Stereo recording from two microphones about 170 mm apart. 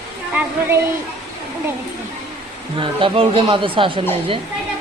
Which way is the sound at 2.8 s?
30° right (ahead or behind).